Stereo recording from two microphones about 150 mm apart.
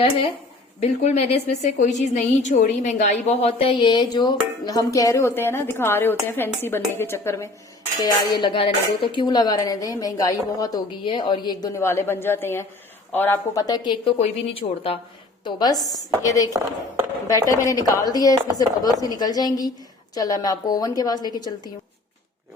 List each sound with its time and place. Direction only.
0.8 s a woman's voice: 45° left (ahead or behind); by 7.5 s 20° left (ahead or behind)
8.0 s speech: 30° left (ahead or behind)
11.0 s a woman's voice: 35° left (ahead or behind); by 13.7 s 15° left (ahead or behind)
13.7 s a woman's voice: 30° left (ahead or behind)
15.4 s speech: 30° left (ahead or behind)